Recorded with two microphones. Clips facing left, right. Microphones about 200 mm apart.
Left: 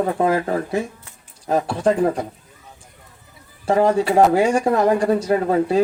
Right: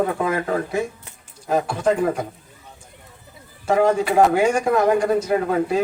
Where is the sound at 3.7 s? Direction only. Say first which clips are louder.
Left 1 dB; 35° left (ahead or behind).